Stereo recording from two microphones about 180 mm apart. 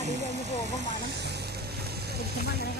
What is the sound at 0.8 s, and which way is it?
Vehicle, 75° right (ahead or behind).